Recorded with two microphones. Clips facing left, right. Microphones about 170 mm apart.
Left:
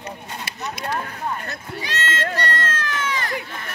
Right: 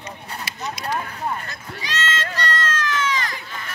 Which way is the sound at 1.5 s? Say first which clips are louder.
Left 2 dB; 60° left (ahead or behind).